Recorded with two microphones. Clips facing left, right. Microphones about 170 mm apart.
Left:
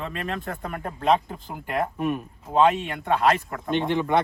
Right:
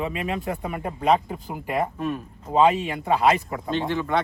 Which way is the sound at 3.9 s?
20° left (ahead or behind).